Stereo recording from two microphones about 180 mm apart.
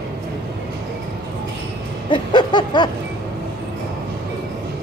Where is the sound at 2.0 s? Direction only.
25° left (ahead or behind).